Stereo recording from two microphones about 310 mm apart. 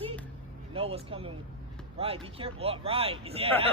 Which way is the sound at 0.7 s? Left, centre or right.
Centre.